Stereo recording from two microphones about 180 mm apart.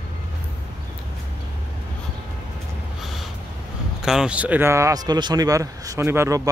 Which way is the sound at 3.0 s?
Centre (ahead or behind).